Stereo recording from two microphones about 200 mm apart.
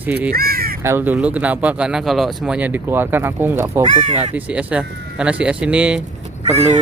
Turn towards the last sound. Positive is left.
turn(degrees=-35)  # may be behind; listen again after turning